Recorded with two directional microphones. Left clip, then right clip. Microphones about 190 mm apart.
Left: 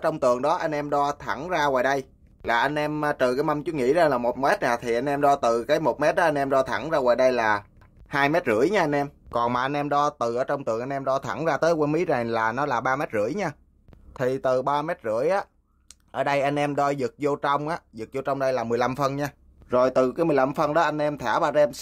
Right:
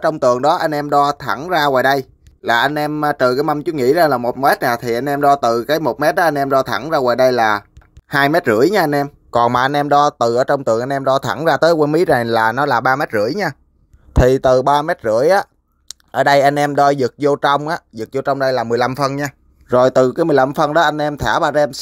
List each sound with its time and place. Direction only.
0.2 s speech: 20° right (ahead or behind)